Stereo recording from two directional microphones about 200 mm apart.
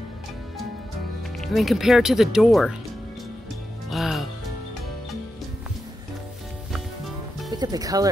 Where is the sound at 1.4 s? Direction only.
Centre (ahead or behind).